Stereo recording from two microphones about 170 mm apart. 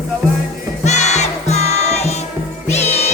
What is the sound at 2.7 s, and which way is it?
Cat, 40° left (ahead or behind).